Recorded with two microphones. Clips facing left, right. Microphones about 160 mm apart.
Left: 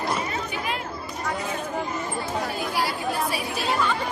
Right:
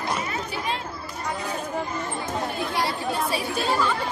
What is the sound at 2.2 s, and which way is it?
Chatter, 25° right (ahead or behind).